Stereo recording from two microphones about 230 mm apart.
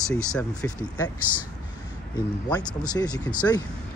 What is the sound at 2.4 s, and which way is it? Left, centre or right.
Speech, centre.